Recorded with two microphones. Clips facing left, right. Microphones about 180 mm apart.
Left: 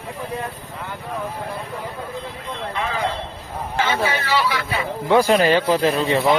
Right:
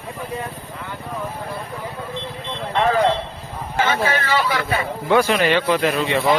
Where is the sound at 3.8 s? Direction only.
50° right (ahead or behind).